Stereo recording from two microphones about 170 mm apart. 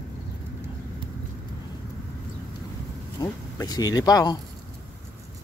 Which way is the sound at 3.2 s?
20° left (ahead or behind).